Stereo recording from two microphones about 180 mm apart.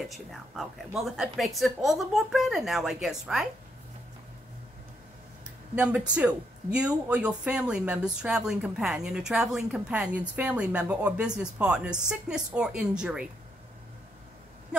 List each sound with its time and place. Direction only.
0.1 s speech: centre (ahead or behind)
5.8 s speech: 5° right (ahead or behind)